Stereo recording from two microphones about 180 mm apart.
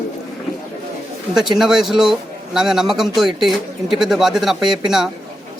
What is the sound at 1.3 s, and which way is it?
A man's voice, centre (ahead or behind).